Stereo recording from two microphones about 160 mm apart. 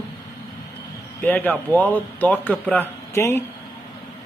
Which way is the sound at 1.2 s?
10° left (ahead or behind).